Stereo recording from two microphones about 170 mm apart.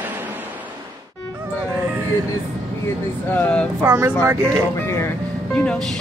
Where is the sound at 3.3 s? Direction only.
5° left (ahead or behind).